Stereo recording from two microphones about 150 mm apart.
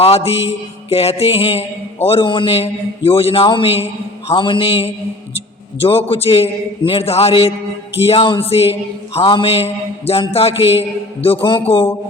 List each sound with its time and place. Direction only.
0.0 s mantra: 40° left (ahead or behind)